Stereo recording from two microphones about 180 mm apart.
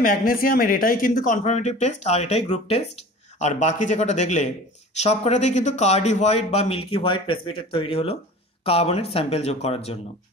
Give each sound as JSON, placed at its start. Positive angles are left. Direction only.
{"t": 0.0, "sound": "speech", "side_deg": 50}